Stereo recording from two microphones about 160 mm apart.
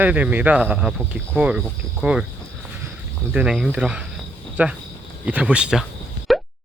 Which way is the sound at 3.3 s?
5° right (ahead or behind).